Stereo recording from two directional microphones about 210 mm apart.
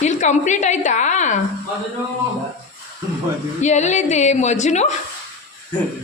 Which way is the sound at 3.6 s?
35° left (ahead or behind).